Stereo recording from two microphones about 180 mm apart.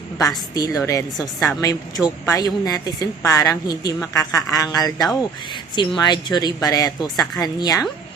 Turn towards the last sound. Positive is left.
turn(degrees=20)  # may be behind; listen again after turning